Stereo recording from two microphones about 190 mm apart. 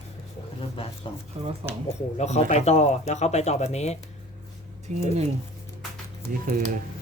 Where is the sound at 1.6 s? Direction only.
30° right (ahead or behind).